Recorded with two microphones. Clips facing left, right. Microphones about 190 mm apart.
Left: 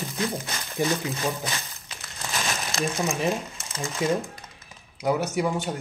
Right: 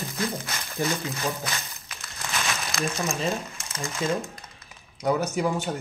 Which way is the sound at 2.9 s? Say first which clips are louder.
Left 3 dB; 15° left (ahead or behind).